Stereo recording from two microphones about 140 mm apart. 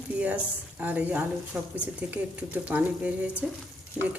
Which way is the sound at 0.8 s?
10° right (ahead or behind).